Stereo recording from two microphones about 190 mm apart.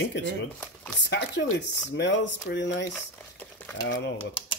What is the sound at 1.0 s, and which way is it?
Speech, 65° left (ahead or behind).